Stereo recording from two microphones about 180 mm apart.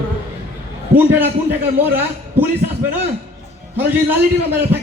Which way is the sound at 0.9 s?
10° right (ahead or behind).